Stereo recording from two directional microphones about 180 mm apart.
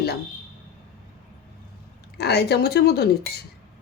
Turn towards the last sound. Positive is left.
turn(degrees=65)  # may be behind; listen again after turning